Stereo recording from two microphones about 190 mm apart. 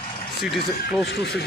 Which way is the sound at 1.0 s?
60° left (ahead or behind).